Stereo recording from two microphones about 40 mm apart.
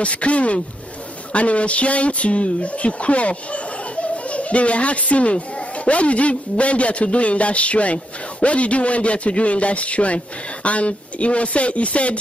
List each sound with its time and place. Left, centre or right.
0.0 s a man's voice: left